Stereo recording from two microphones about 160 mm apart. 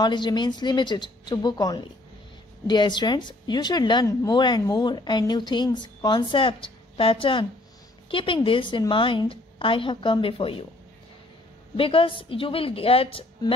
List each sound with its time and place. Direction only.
0.0 s a woman's voice: 25° left (ahead or behind)
11.7 s a woman's voice: 35° left (ahead or behind)